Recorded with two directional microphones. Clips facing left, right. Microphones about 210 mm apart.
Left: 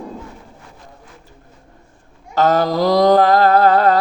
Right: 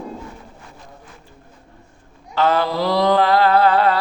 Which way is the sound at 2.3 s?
40° left (ahead or behind).